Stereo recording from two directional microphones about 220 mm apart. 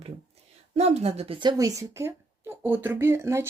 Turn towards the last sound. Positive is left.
turn(degrees=-10)  # may be behind; listen again after turning